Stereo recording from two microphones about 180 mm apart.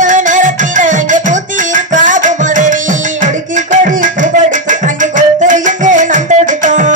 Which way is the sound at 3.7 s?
45° right (ahead or behind).